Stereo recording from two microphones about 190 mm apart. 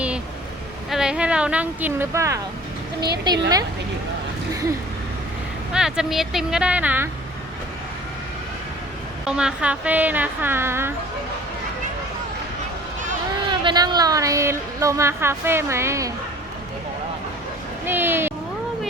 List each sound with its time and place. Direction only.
0.9 s a woman's voice: 5° right (ahead or behind); by 3.4 s 25° right (ahead or behind)
5.7 s speech: 5° right (ahead or behind)
9.2 s speech: 5° right (ahead or behind)
13.5 s speech: 25° right (ahead or behind)
17.8 s speech: 10° right (ahead or behind)